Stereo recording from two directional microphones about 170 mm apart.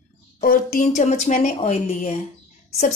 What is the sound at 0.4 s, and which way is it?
A woman's voice, 55° left (ahead or behind).